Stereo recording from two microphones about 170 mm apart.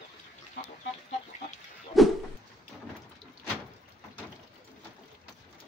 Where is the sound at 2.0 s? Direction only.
Centre (ahead or behind).